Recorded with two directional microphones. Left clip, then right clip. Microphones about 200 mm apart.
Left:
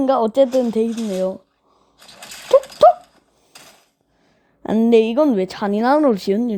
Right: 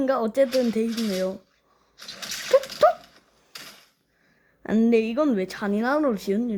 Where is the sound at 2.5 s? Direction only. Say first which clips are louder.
Left 6 dB; 30° left (ahead or behind).